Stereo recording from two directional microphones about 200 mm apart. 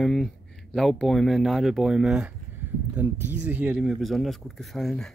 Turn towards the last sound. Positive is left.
turn(degrees=0)  # may be behind; listen again after turning